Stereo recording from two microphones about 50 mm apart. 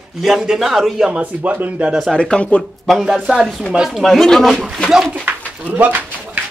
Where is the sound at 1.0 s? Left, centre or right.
Right.